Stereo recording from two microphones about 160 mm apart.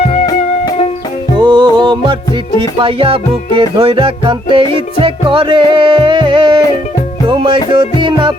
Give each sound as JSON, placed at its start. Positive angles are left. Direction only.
{"t": 1.4, "sound": "music", "side_deg": -30}